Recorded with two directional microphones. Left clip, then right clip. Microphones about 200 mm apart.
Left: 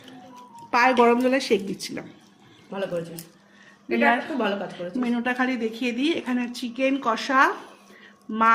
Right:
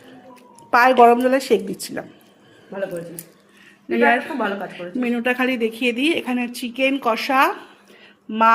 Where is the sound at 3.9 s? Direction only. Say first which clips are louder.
Right 4 dB; centre (ahead or behind).